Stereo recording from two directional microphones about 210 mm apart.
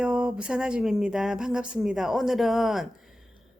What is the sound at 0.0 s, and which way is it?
A woman's voice, centre (ahead or behind).